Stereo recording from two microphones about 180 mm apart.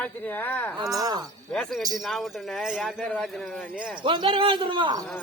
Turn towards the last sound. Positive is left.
turn(degrees=-25)  # may be behind; listen again after turning